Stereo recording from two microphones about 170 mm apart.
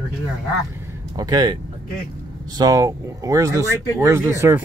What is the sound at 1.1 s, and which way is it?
Speech, 20° right (ahead or behind).